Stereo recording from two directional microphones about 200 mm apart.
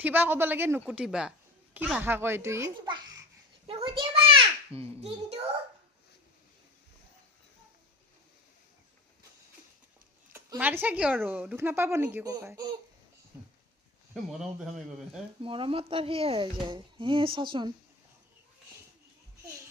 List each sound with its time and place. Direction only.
0.0 s a woman's voice: 10° right (ahead or behind)
3.7 s a sound: 25° right (ahead or behind)
4.8 s speech: 30° right (ahead or behind)
10.3 s a woman's voice: 10° right (ahead or behind)
14.1 s speech: centre (ahead or behind)
15.4 s speech: 25° right (ahead or behind)